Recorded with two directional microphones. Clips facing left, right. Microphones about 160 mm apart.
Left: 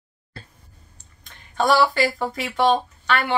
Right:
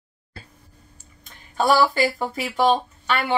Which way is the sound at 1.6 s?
5° right (ahead or behind).